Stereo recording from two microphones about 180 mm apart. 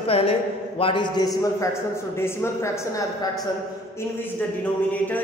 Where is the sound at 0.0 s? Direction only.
30° left (ahead or behind).